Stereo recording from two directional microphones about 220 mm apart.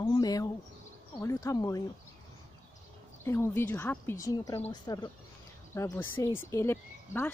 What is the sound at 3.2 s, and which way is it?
Speech, 10° left (ahead or behind).